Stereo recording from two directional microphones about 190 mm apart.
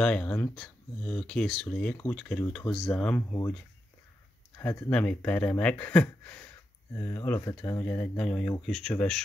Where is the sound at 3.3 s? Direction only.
15° left (ahead or behind).